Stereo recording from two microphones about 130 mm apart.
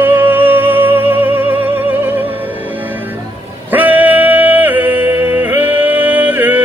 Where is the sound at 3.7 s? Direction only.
15° right (ahead or behind).